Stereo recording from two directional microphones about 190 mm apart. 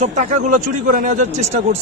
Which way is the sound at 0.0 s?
40° right (ahead or behind).